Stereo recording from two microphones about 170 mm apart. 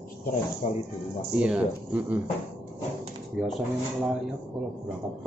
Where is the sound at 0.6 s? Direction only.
40° left (ahead or behind).